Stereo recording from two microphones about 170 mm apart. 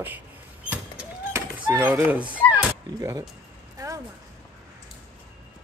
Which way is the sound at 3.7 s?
20° right (ahead or behind).